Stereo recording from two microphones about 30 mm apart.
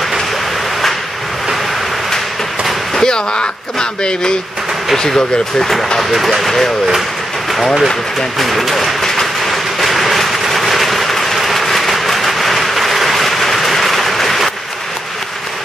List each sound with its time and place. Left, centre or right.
2.9 s speech: left
5.9 s speech: centre
9.0 s train: centre